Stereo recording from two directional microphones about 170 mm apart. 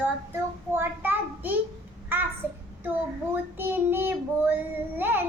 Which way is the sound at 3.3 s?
10° right (ahead or behind).